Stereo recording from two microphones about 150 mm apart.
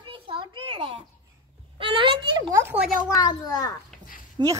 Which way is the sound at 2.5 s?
15° right (ahead or behind).